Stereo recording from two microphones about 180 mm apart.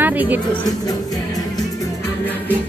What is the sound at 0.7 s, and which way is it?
Music, 20° left (ahead or behind).